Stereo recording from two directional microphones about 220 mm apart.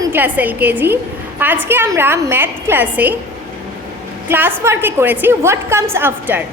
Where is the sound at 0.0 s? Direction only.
10° right (ahead or behind).